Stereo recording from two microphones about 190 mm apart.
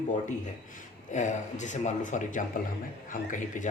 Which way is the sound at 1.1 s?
40° left (ahead or behind).